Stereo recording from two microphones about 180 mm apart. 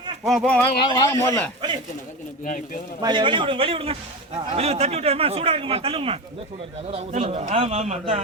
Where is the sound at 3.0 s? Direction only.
25° right (ahead or behind).